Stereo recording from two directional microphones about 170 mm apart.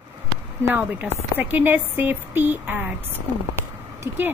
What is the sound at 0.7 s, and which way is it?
A woman's voice, 10° right (ahead or behind).